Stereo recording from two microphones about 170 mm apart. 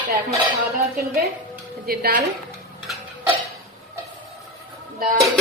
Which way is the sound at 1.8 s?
60° right (ahead or behind).